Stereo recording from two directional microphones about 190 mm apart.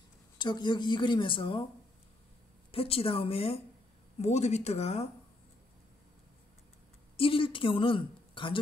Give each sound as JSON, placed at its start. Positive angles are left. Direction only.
{"t": 0.4, "sound": "speech", "side_deg": 25}
{"t": 2.7, "sound": "speech", "side_deg": 30}
{"t": 7.2, "sound": "a woman's voice", "side_deg": 30}